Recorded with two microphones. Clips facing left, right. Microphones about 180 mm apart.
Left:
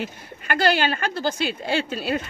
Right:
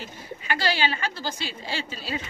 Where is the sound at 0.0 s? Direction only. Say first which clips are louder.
Left 5 dB; 55° left (ahead or behind).